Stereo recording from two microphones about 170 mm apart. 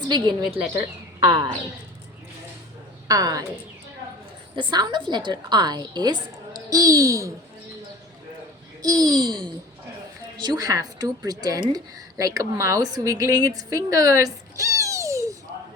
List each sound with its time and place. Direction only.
0.1 s a woman's voice: 25° right (ahead or behind)
3.1 s a woman's voice: 20° right (ahead or behind)
4.5 s a woman's voice: 25° right (ahead or behind)
8.8 s a woman's voice: 20° right (ahead or behind)
10.3 s a woman's voice: 25° right (ahead or behind)